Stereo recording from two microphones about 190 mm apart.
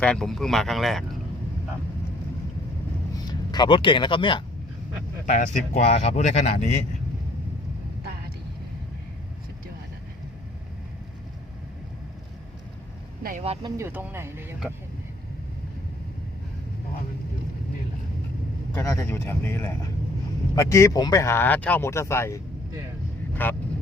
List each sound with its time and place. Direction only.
0.0 s speech: 5° left (ahead or behind)
3.2 s speech: 20° left (ahead or behind)
5.2 s speech: 45° left (ahead or behind)
5.7 s speech: 35° left (ahead or behind)
13.4 s speech: 30° right (ahead or behind); by 14.7 s 10° right (ahead or behind)
18.7 s speech: 15° left (ahead or behind)